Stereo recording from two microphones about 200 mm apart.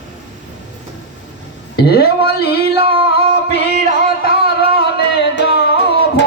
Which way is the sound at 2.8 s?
30° right (ahead or behind).